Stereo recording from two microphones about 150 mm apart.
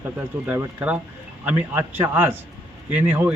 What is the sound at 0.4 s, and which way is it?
A man's voice, 15° right (ahead or behind).